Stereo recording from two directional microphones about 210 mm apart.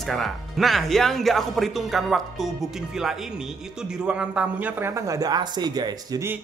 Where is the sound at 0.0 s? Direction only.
Centre (ahead or behind).